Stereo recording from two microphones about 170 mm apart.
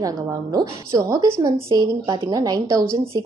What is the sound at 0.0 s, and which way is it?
Speech, 20° right (ahead or behind).